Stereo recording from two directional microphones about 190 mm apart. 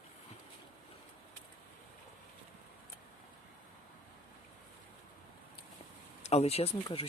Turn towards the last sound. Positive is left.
turn(degrees=30)  # may be behind; listen again after turning